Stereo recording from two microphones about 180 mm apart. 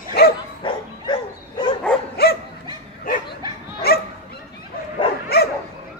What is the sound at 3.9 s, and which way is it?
Dog, 60° left (ahead or behind).